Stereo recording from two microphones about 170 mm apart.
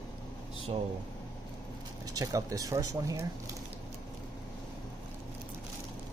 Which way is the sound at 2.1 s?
20° right (ahead or behind).